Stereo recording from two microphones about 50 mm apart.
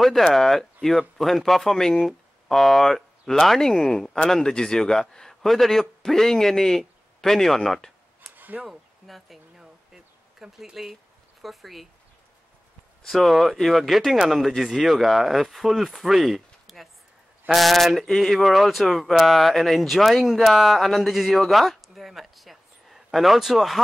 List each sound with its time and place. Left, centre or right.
0.0 s a man's voice: centre
8.4 s a sound: right
8.6 s speech: centre
9.6 s a sound: centre
11.4 s speech: centre
13.1 s speech: centre